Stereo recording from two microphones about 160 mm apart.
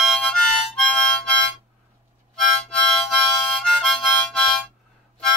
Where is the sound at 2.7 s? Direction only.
5° left (ahead or behind).